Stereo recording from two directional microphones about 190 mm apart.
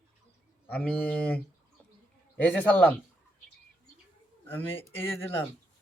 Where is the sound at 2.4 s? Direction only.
10° left (ahead or behind).